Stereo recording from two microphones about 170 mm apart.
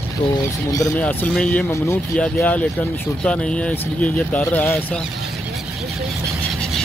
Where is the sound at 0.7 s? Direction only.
20° left (ahead or behind).